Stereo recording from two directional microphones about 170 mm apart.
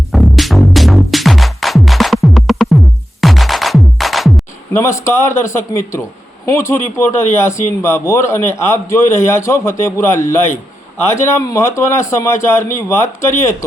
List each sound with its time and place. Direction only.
0.1 s music: centre (ahead or behind)
4.7 s a man's voice: 15° left (ahead or behind)